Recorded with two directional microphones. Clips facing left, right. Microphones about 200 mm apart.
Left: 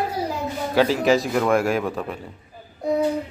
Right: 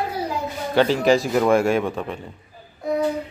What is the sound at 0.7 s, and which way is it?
Speech, centre (ahead or behind).